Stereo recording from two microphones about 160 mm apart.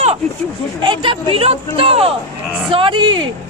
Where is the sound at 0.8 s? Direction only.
30° right (ahead or behind).